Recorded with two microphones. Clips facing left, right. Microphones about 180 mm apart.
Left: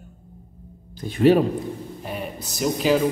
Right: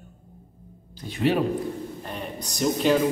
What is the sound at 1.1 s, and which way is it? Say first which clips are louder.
Speech: left 7 dB; 45° left (ahead or behind).